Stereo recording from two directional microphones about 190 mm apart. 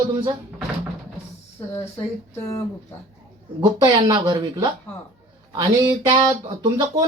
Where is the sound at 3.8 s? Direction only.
20° right (ahead or behind).